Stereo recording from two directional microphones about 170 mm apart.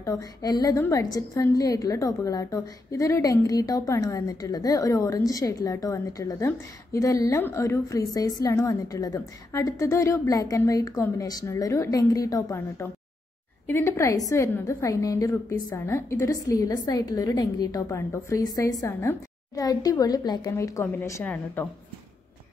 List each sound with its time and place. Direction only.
0.0 s a woman's voice: 20° left (ahead or behind)